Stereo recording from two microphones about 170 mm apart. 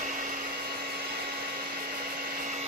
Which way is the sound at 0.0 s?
50° right (ahead or behind).